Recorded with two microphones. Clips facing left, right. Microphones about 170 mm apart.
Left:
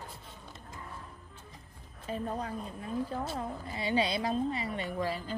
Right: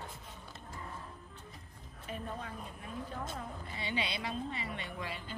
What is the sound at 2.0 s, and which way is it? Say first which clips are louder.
A woman's voice: left 7 dB; 35° left (ahead or behind).